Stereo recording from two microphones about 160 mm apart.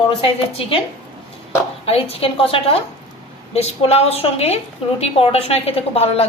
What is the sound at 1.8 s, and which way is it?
A woman's voice, 40° left (ahead or behind).